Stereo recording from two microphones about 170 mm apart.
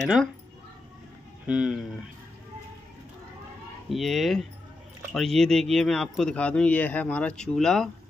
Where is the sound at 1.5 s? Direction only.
5° right (ahead or behind).